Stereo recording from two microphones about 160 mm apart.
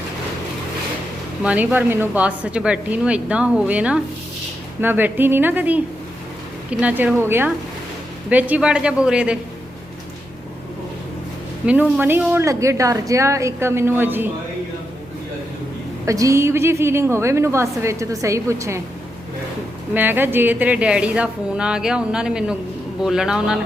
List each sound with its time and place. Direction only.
1.4 s a woman's voice: 10° right (ahead or behind)
11.6 s a woman's voice: 10° right (ahead or behind)
16.0 s a woman's voice: 20° right (ahead or behind)
19.9 s a woman's voice: 10° right (ahead or behind)